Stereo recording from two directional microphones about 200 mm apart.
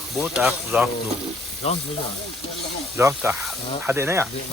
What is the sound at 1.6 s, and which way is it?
Speech, 30° left (ahead or behind).